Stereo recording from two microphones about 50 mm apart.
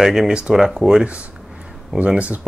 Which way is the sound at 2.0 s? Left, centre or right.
Right.